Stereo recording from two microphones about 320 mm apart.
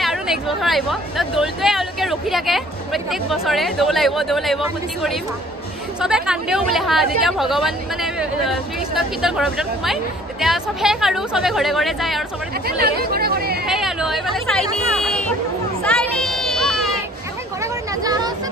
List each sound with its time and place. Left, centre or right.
0.0 s speech: centre
12.6 s speech: right
13.7 s speech: centre
15.8 s a sound: centre
17.6 s hubbub: centre